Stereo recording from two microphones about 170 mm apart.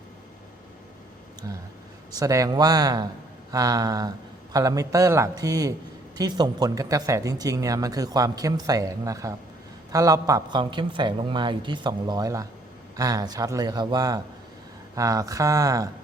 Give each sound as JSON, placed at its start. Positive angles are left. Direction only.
{"t": 1.5, "sound": "speech", "side_deg": -25}